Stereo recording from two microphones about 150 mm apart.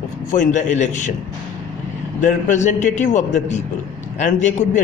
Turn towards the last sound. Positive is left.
turn(degrees=55)  # may be behind; listen again after turning